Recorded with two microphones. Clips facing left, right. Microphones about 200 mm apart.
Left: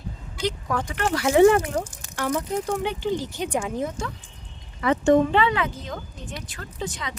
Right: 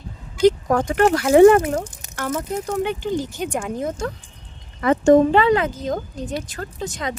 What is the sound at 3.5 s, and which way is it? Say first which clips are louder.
Speech: left 2 dB; centre (ahead or behind).